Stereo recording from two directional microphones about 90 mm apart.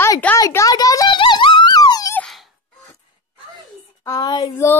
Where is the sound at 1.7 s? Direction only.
45° left (ahead or behind).